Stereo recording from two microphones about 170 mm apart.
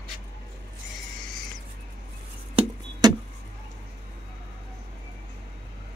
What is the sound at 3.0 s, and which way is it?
Vehicle, 25° right (ahead or behind).